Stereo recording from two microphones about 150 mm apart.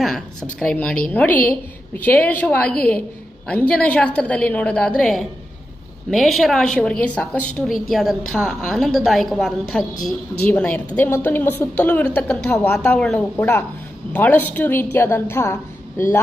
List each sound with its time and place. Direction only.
0.6 s a woman's voice: 5° left (ahead or behind)